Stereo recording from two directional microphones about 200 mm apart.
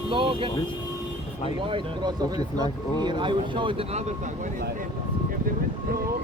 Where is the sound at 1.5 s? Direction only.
25° right (ahead or behind).